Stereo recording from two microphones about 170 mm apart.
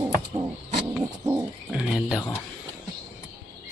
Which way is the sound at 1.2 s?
10° right (ahead or behind).